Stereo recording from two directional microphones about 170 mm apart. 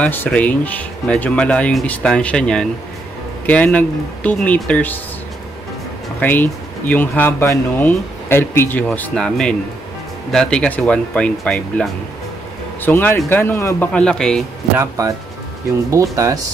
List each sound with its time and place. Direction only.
0.0 s speech: 10° left (ahead or behind)
6.1 s speech: 10° left (ahead or behind)
14.8 s speech: 20° right (ahead or behind)